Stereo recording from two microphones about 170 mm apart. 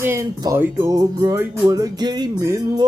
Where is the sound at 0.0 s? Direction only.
20° right (ahead or behind).